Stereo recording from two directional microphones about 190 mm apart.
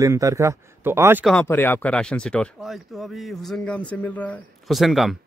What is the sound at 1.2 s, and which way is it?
Speech, 5° left (ahead or behind).